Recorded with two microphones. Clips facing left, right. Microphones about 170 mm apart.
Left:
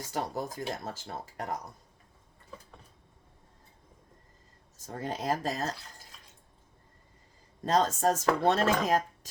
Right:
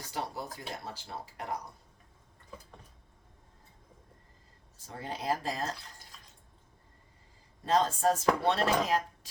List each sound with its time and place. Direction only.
0.0 s speech: 45° left (ahead or behind)
4.9 s speech: 45° left (ahead or behind)
7.6 s speech: 40° left (ahead or behind)